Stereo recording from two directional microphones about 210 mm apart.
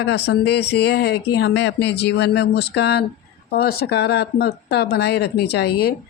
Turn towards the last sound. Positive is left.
turn(degrees=50)  # may be behind; listen again after turning